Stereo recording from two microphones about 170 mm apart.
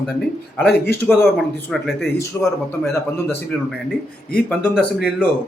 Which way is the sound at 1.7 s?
Centre (ahead or behind).